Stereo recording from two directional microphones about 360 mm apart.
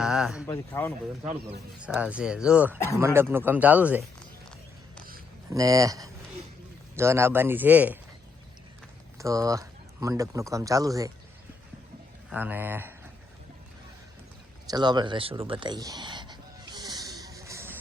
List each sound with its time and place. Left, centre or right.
0.0 s speech: centre
1.3 s speech: right
1.8 s speech: centre
2.7 s speech: centre
3.0 s speech: centre
5.5 s a man's voice: centre
9.1 s speech: centre
12.3 s speech: centre
14.7 s a sound: centre